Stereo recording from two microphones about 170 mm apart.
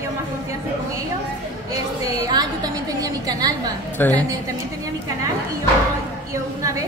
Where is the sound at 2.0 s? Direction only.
25° right (ahead or behind).